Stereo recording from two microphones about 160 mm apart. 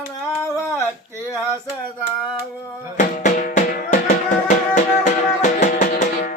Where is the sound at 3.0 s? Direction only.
50° left (ahead or behind).